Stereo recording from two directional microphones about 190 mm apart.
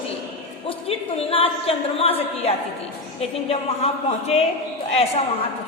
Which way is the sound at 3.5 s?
30° left (ahead or behind).